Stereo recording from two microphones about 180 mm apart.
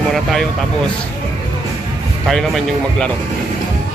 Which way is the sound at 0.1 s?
Centre (ahead or behind).